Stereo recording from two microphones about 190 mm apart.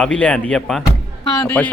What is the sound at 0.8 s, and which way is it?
Music, 20° left (ahead or behind).